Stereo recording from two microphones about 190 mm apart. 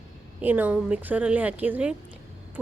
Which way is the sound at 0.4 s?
10° right (ahead or behind).